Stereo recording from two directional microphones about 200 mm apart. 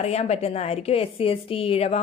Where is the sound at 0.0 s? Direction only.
35° left (ahead or behind).